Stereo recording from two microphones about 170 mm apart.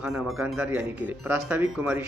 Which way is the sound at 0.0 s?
Centre (ahead or behind).